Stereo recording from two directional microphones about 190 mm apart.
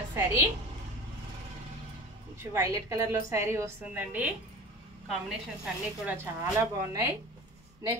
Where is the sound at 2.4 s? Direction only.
15° right (ahead or behind).